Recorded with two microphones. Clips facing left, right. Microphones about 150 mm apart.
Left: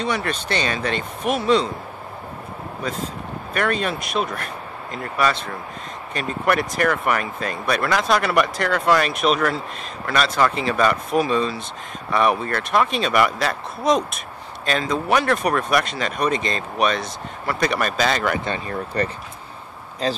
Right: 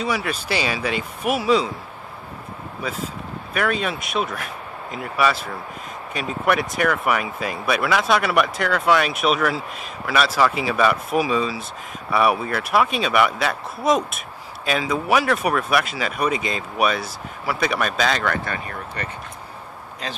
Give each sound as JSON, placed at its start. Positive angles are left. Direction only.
{"t": 0.0, "sound": "speech", "side_deg": -5}
{"t": 2.8, "sound": "speech", "side_deg": -5}
{"t": 18.4, "sound": "speech", "side_deg": 30}